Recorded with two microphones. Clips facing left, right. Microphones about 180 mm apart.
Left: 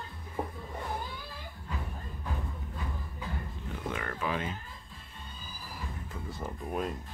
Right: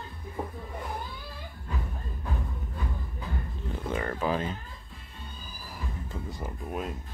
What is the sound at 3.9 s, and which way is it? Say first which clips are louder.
Speech: right 5 dB; 30° right (ahead or behind).